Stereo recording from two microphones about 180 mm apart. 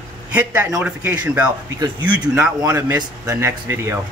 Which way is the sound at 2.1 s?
10° right (ahead or behind).